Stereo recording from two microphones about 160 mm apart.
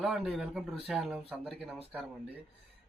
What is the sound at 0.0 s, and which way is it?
Speech, centre (ahead or behind).